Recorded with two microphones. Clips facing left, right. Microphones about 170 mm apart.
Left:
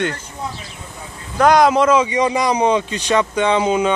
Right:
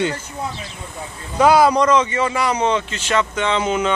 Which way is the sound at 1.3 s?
5° right (ahead or behind).